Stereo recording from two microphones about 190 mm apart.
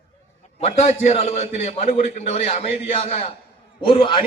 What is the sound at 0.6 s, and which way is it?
A man's voice, 35° left (ahead or behind).